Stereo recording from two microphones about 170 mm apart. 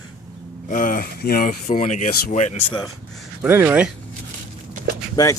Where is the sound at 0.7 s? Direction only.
55° left (ahead or behind).